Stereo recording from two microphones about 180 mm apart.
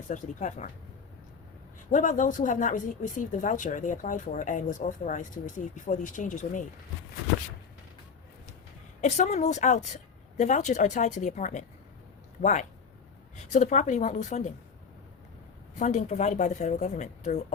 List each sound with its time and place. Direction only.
0.1 s speech: 45° left (ahead or behind)
1.9 s speech: 45° left (ahead or behind)
9.0 s speech: 40° left (ahead or behind)
15.8 s speech: 40° left (ahead or behind)